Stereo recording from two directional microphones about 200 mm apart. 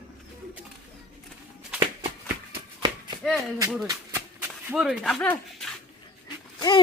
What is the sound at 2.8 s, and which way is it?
Chop, 25° right (ahead or behind).